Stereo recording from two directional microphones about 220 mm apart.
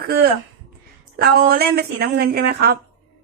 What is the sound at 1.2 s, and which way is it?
A woman's voice, 45° right (ahead or behind).